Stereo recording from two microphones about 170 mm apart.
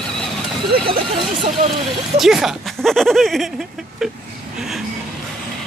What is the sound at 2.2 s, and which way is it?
Speech, centre (ahead or behind).